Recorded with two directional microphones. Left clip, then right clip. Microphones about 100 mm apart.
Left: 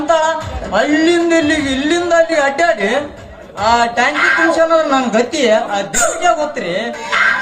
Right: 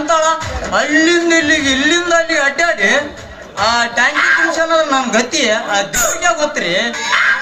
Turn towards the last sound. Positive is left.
turn(degrees=35)  # may be behind; listen again after turning